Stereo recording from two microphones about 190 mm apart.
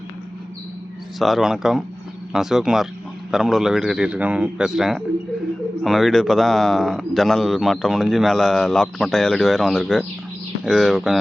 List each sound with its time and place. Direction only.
1.2 s speech: centre (ahead or behind)